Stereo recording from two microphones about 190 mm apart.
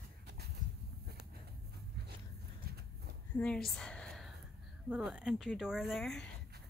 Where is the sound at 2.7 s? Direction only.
55° right (ahead or behind).